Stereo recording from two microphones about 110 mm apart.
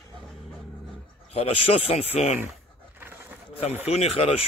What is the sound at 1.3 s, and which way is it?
Speech, 65° left (ahead or behind).